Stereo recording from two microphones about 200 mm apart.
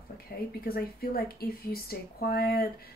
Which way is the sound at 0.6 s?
50° left (ahead or behind).